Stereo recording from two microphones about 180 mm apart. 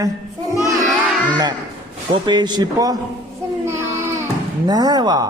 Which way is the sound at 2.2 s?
25° right (ahead or behind).